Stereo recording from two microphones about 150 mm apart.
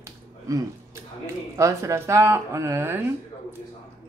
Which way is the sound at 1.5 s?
20° right (ahead or behind).